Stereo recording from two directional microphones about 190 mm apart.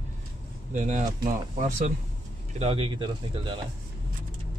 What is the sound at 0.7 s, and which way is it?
Speech, 40° right (ahead or behind).